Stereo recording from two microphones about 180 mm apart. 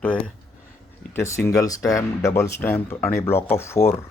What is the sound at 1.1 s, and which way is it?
Speech, 15° left (ahead or behind).